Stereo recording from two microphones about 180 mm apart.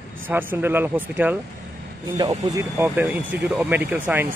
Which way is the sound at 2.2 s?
20° right (ahead or behind).